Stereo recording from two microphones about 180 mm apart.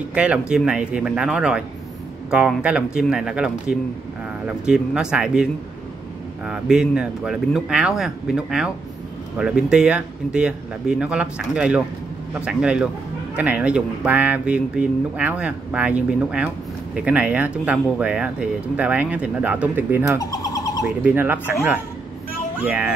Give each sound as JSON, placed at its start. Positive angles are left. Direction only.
{"t": 0.1, "sound": "speech", "side_deg": -5}
{"t": 20.2, "sound": "bird", "side_deg": 20}
{"t": 21.0, "sound": "speech", "side_deg": -10}
{"t": 22.6, "sound": "speech", "side_deg": -5}